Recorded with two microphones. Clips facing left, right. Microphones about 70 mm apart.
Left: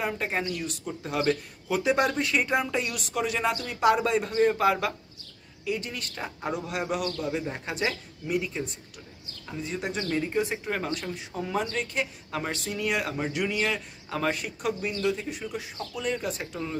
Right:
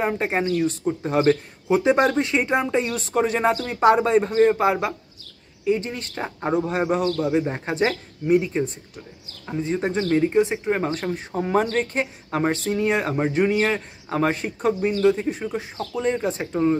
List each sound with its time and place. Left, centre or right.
0.0 s speech: right
10.8 s speech: right